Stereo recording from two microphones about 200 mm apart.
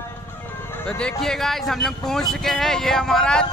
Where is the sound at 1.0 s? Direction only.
Centre (ahead or behind).